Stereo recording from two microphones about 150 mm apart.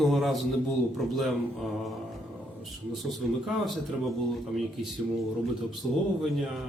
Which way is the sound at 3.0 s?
Centre (ahead or behind).